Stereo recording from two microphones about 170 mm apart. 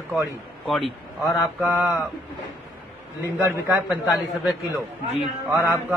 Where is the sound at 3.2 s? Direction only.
10° right (ahead or behind).